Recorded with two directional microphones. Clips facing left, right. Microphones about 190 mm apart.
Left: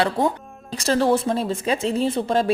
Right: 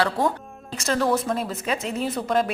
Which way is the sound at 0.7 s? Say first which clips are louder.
Left 3 dB; 30° left (ahead or behind).